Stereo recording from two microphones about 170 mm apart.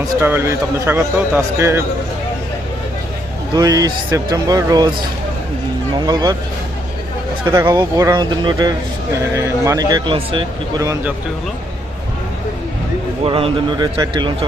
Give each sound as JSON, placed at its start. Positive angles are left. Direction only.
{"t": 0.2, "sound": "a man's voice", "side_deg": -15}
{"t": 3.5, "sound": "speech", "side_deg": -20}
{"t": 6.1, "sound": "speech", "side_deg": -25}
{"t": 7.4, "sound": "speech", "side_deg": -15}
{"t": 10.8, "sound": "a man's voice", "side_deg": -20}
{"t": 13.2, "sound": "speech", "side_deg": -30}